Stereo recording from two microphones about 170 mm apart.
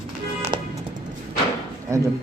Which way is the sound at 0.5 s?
25° right (ahead or behind).